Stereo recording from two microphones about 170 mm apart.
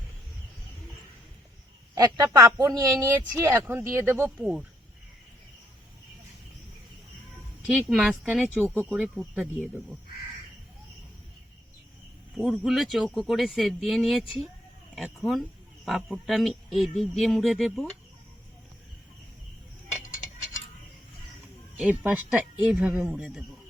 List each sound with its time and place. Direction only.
2.0 s speech: 20° right (ahead or behind)
4.4 s speech: 5° right (ahead or behind)
7.7 s speech: centre (ahead or behind)
8.5 s speech: 15° right (ahead or behind)
12.4 s speech: centre (ahead or behind)
21.8 s speech: 5° right (ahead or behind)